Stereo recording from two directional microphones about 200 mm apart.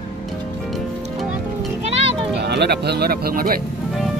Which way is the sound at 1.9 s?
30° right (ahead or behind).